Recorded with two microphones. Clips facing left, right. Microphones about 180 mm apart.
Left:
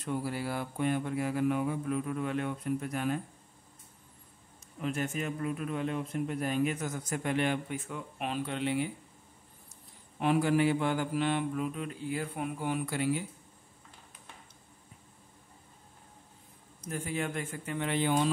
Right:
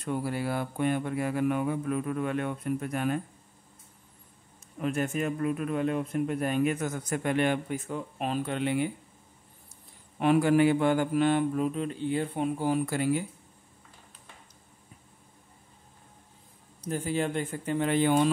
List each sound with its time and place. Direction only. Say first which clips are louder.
0.0 s speech: right 3 dB; 55° right (ahead or behind)
4.8 s speech: right 4 dB; 50° right (ahead or behind)
7.7 s speech: right 5 dB; 40° right (ahead or behind)
10.2 s speech: right 5 dB; 60° right (ahead or behind)
16.8 s speech: right 5 dB; 35° right (ahead or behind)